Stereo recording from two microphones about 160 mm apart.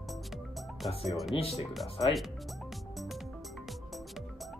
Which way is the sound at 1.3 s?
40° left (ahead or behind).